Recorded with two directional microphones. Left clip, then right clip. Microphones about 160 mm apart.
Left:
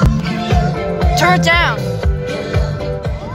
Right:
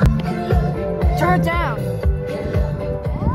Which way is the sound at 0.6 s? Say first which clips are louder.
Left 4 dB; 55° left (ahead or behind).